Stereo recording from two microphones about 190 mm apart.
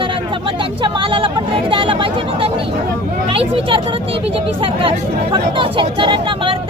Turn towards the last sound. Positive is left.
turn(degrees=-25)  # may be behind; listen again after turning